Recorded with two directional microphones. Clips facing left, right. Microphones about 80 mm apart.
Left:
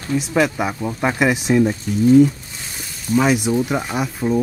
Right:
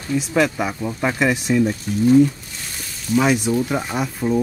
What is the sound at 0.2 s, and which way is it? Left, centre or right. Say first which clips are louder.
Speech: even; centre.